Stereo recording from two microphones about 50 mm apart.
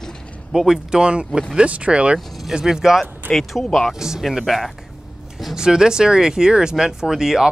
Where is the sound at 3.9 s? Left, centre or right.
Centre.